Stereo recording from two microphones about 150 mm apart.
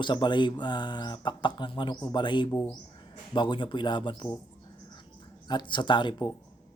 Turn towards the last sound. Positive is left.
turn(degrees=30)  # may be behind; listen again after turning